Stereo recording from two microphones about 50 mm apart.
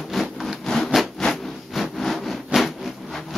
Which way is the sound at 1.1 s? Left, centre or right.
Centre.